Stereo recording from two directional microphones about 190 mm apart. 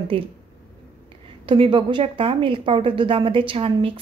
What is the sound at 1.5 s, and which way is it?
Speech, 25° right (ahead or behind).